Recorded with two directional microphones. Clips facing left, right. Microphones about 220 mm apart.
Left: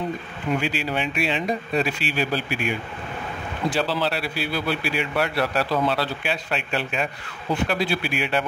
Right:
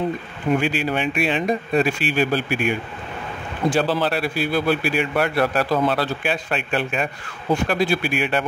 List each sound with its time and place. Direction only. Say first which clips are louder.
0.6 s a man's voice: right 4 dB; 50° right (ahead or behind)
3.7 s a man's voice: right 4 dB; 50° right (ahead or behind)